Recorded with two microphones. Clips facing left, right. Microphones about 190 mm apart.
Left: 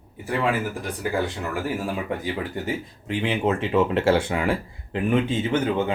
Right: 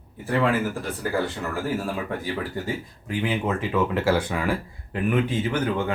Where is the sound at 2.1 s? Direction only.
20° left (ahead or behind).